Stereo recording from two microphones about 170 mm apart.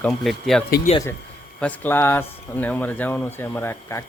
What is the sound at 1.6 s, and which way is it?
Speech, 10° left (ahead or behind).